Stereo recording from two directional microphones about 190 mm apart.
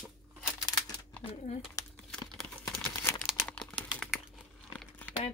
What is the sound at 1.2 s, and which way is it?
Speech, 30° left (ahead or behind).